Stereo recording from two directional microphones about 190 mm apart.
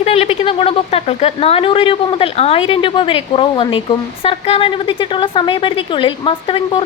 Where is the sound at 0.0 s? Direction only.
30° left (ahead or behind).